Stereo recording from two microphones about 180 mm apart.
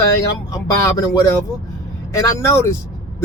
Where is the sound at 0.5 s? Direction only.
20° left (ahead or behind).